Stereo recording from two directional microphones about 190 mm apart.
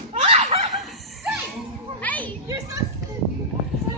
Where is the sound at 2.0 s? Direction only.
10° left (ahead or behind).